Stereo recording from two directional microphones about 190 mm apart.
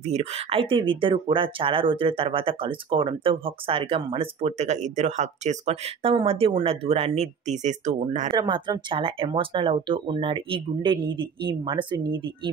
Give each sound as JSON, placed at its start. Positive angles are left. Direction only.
{"t": 0.0, "sound": "speech", "side_deg": -35}
{"t": 8.3, "sound": "speech", "side_deg": -25}